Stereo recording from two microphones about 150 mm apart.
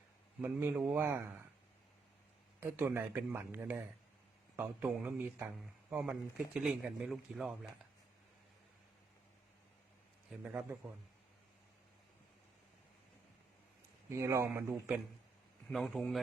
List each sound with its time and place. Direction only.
0.4 s speech: 15° right (ahead or behind)
2.6 s speech: 15° right (ahead or behind)
10.5 s speech: 10° right (ahead or behind)
14.1 s a man's voice: 20° right (ahead or behind)
15.6 s speech: centre (ahead or behind)